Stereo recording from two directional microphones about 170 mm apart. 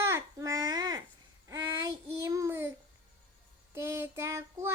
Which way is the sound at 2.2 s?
15° right (ahead or behind).